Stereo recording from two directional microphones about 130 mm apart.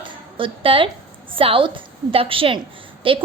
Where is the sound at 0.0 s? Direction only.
40° right (ahead or behind).